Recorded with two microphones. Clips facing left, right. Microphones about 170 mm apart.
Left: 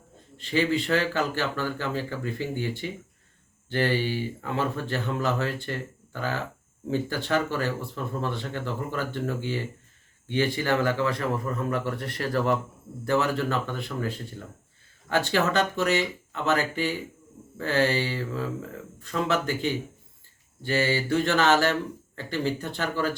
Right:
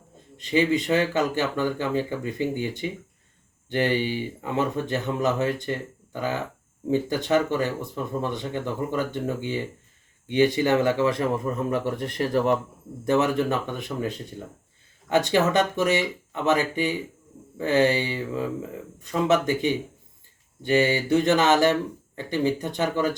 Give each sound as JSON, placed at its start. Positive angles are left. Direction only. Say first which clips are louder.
{"t": 0.3, "sound": "speech", "louder": "right 3 dB", "side_deg": -15}